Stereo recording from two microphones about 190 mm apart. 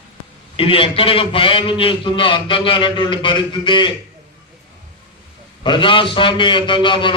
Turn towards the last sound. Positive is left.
turn(degrees=25)  # may be behind; listen again after turning